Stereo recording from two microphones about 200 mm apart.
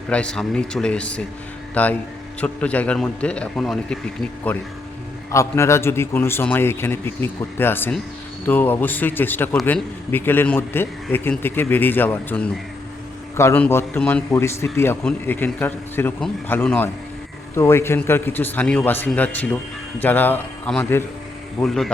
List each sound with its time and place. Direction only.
0.1 s a man's voice: 5° left (ahead or behind)
5.3 s a man's voice: 15° left (ahead or behind)